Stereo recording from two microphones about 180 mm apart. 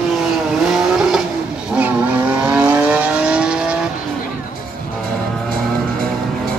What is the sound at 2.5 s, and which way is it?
Vehicle, 5° right (ahead or behind).